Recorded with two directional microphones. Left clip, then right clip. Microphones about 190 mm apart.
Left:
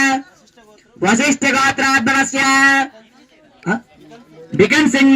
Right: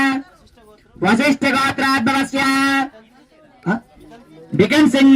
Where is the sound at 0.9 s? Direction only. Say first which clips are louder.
Left 1 dB; 50° right (ahead or behind).